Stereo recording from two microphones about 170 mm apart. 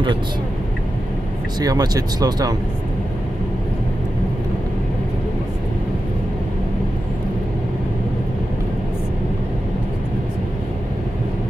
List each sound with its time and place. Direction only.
1.6 s speech: 20° right (ahead or behind)